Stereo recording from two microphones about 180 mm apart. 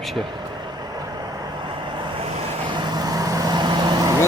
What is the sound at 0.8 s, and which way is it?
Vehicle, 20° right (ahead or behind).